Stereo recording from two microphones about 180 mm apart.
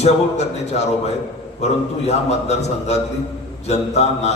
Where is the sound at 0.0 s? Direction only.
40° left (ahead or behind).